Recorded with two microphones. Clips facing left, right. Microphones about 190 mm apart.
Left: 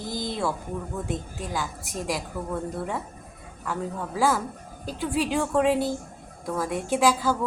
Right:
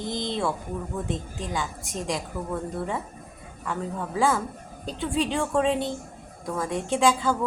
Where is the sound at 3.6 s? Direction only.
Centre (ahead or behind).